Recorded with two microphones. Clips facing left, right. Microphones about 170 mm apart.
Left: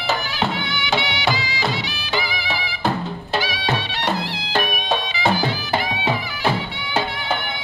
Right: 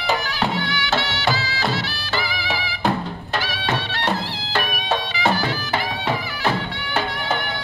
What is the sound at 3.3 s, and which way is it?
Music, 10° left (ahead or behind).